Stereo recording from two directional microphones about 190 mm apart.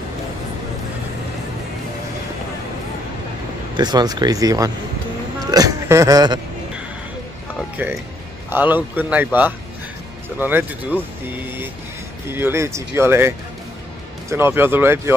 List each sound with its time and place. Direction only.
3.7 s speech: 20° right (ahead or behind)
7.7 s speech: 10° right (ahead or behind)
14.3 s speech: 10° right (ahead or behind)